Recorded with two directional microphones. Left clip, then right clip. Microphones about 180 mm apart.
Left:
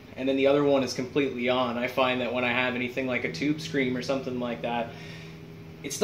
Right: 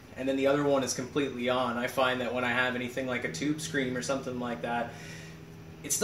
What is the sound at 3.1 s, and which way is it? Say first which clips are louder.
Speech: left 3 dB; 60° right (ahead or behind).